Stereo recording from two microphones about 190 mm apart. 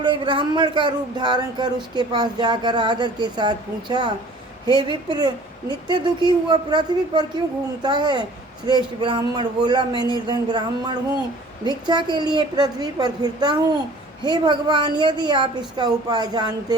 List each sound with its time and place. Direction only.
0.0 s speech: 25° right (ahead or behind)